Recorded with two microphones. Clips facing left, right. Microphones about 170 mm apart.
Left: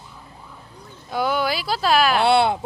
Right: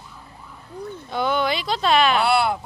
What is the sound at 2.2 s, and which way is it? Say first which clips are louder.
Speech: left 3 dB; 25° left (ahead or behind).